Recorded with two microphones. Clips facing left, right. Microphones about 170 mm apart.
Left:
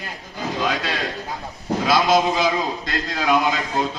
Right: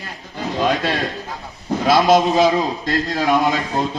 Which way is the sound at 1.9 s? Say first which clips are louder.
Right 4 dB; 50° right (ahead or behind).